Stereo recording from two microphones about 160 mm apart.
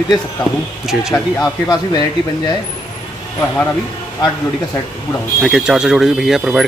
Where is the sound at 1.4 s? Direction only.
25° left (ahead or behind).